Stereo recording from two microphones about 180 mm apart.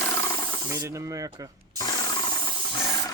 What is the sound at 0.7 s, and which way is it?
Speech, 15° right (ahead or behind).